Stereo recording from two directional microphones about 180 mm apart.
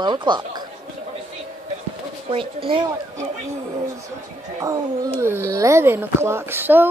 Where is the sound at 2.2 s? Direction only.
30° right (ahead or behind).